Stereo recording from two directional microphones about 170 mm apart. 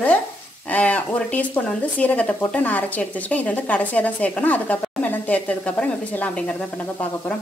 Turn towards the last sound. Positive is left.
turn(degrees=5)  # may be behind; listen again after turning